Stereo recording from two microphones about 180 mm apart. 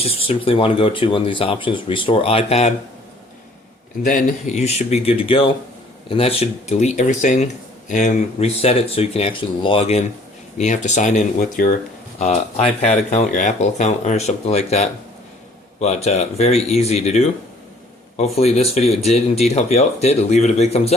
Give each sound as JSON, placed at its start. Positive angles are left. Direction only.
{"t": 0.0, "sound": "speech", "side_deg": 30}
{"t": 4.0, "sound": "speech", "side_deg": 45}
{"t": 12.2, "sound": "speech", "side_deg": 40}